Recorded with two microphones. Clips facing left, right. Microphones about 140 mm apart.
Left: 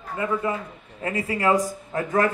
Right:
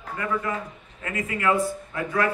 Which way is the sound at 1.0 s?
30° left (ahead or behind).